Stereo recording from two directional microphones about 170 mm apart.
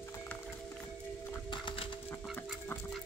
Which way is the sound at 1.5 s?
30° left (ahead or behind).